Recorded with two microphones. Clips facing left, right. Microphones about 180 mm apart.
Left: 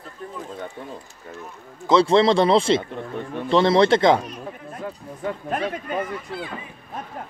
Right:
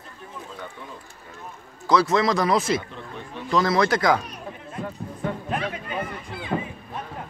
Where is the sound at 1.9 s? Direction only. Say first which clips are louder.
Left 4 dB; 30° left (ahead or behind).